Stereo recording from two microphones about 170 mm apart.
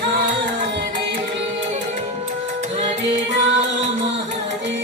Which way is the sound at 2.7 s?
40° right (ahead or behind).